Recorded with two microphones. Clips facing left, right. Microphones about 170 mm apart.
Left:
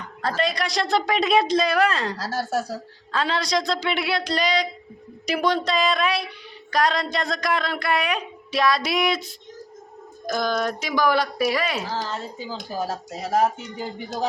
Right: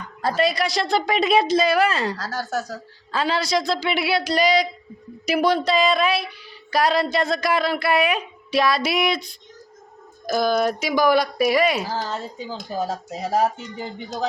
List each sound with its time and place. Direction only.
0.2 s speech: 10° right (ahead or behind)
2.1 s speech: 30° left (ahead or behind)
3.1 s a woman's voice: 5° right (ahead or behind)
12.7 s speech: centre (ahead or behind)